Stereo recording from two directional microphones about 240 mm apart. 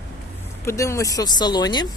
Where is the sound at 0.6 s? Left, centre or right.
Centre.